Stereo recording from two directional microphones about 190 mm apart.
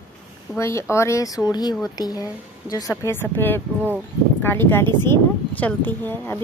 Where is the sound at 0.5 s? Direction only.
15° left (ahead or behind).